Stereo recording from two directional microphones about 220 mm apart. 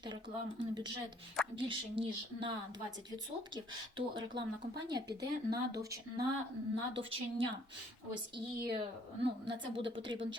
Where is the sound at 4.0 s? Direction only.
20° right (ahead or behind).